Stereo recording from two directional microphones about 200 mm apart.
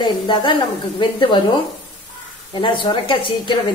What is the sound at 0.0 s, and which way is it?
A woman's voice, 25° left (ahead or behind).